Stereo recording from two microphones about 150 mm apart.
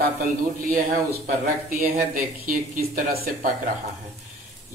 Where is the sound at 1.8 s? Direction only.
65° right (ahead or behind).